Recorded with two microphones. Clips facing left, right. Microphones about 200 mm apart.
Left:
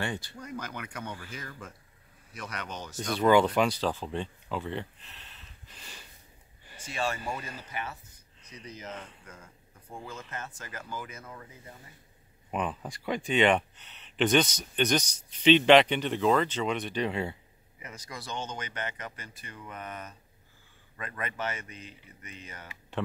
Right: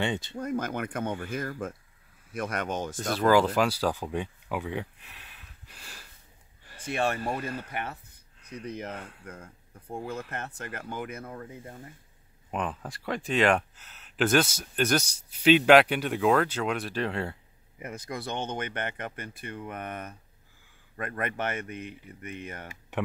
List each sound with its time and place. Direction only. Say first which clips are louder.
0.0 s speech: right 4 dB; 20° right (ahead or behind)
0.4 s speech: right 9 dB; 50° right (ahead or behind)
3.2 s speech: even; centre (ahead or behind)
6.8 s speech: right 5 dB; 60° right (ahead or behind)
12.4 s speech: even; centre (ahead or behind)
17.7 s speech: right 7 dB; 55° right (ahead or behind)